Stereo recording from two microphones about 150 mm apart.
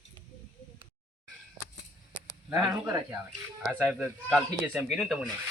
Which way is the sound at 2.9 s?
20° right (ahead or behind).